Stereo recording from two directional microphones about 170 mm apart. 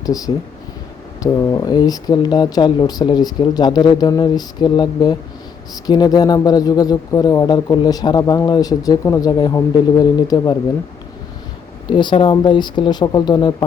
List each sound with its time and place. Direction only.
0.0 s speech: 20° left (ahead or behind)
11.9 s speech: 25° left (ahead or behind)